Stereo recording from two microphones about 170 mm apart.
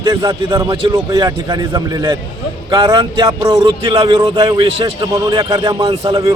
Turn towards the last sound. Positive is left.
turn(degrees=-30)  # may be behind; listen again after turning